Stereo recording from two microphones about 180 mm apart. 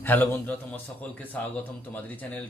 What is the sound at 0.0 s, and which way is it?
A man's voice, 10° left (ahead or behind).